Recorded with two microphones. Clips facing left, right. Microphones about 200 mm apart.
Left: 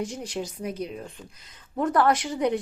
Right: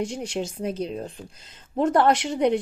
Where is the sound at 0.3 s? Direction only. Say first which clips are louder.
Right 3 dB; 25° right (ahead or behind).